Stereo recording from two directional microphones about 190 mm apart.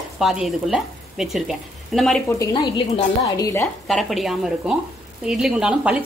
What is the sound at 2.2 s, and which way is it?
A woman's voice, 15° left (ahead or behind).